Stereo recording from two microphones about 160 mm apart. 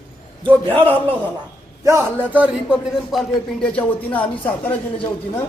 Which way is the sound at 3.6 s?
10° left (ahead or behind).